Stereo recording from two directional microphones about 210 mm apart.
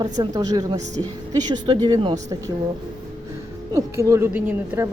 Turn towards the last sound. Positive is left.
turn(degrees=-10)  # may be behind; listen again after turning